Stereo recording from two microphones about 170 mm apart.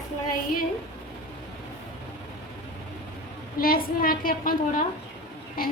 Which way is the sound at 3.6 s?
60° left (ahead or behind).